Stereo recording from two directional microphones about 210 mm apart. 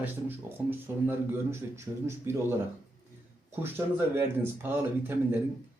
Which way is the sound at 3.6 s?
10° right (ahead or behind).